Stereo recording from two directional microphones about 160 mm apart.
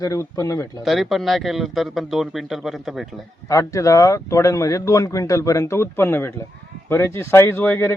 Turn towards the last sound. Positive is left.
turn(degrees=15)  # may be behind; listen again after turning